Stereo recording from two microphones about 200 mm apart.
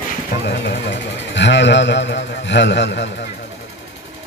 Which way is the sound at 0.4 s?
60° left (ahead or behind).